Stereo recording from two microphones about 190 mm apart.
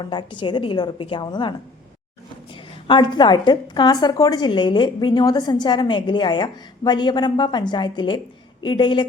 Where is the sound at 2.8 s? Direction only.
25° left (ahead or behind).